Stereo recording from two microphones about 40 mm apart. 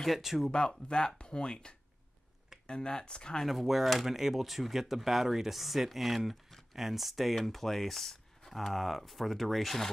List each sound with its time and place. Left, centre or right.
0.0 s speech: centre
0.5 s speech: left
3.4 s speech: centre